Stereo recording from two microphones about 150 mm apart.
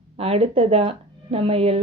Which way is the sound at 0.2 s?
40° right (ahead or behind).